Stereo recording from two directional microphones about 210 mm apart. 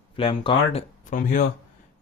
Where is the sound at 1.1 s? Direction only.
40° left (ahead or behind).